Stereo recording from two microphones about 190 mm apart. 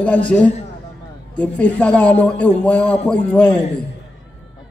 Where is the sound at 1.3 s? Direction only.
5° left (ahead or behind).